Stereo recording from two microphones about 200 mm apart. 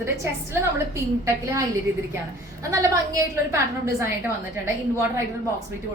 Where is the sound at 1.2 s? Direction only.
15° right (ahead or behind).